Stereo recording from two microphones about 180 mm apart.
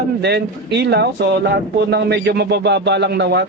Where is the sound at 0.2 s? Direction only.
65° right (ahead or behind).